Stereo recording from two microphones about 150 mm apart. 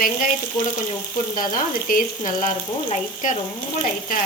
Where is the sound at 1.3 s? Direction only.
70° left (ahead or behind).